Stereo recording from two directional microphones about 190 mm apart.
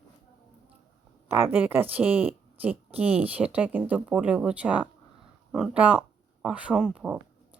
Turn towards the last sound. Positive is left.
turn(degrees=-5)  # may be behind; listen again after turning